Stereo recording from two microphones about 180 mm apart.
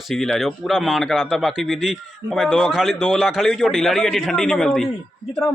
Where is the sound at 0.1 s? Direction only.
Centre (ahead or behind).